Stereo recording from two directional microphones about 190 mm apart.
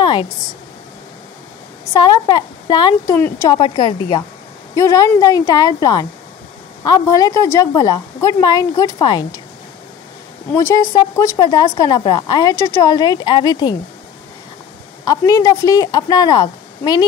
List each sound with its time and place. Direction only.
0.0 s a sound: 25° left (ahead or behind)
2.0 s a woman's voice: 20° left (ahead or behind)
3.2 s speech: 10° left (ahead or behind)
3.4 s a woman's voice: 25° left (ahead or behind)
10.5 s a woman's voice: 15° left (ahead or behind)
15.0 s a woman's voice: 20° left (ahead or behind)